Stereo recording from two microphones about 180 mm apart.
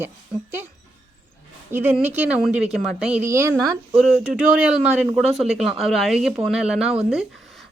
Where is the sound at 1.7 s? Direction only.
10° right (ahead or behind).